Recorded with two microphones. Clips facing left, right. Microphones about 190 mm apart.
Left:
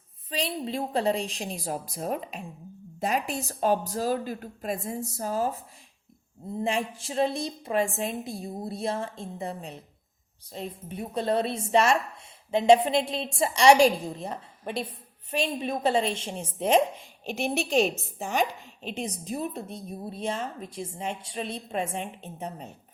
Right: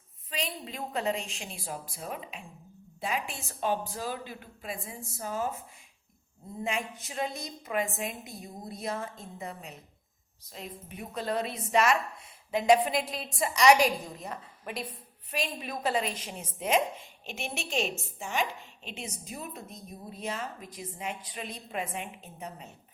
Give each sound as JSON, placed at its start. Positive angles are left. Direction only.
{"t": 0.3, "sound": "a woman's voice", "side_deg": 35}
{"t": 6.6, "sound": "a woman's voice", "side_deg": 35}
{"t": 17.0, "sound": "a woman's voice", "side_deg": 0}
{"t": 18.2, "sound": "a woman's voice", "side_deg": 40}